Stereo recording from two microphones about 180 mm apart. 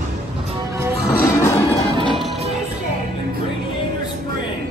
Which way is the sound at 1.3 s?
15° left (ahead or behind).